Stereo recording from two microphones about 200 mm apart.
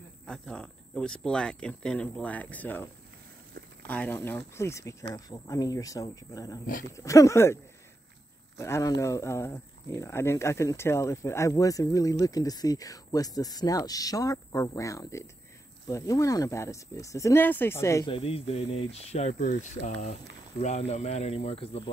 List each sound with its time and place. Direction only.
0.3 s speech: 5° left (ahead or behind)
8.5 s speech: 15° left (ahead or behind)
18.1 s speech: 30° left (ahead or behind)